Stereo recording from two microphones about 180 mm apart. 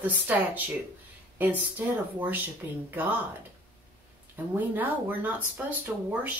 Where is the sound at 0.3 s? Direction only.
10° right (ahead or behind).